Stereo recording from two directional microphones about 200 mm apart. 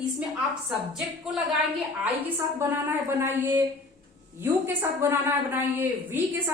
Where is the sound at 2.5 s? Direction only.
10° right (ahead or behind).